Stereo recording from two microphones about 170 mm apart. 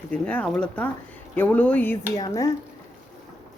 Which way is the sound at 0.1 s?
5° left (ahead or behind).